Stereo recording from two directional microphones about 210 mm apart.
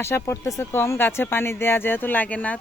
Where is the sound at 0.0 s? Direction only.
10° left (ahead or behind).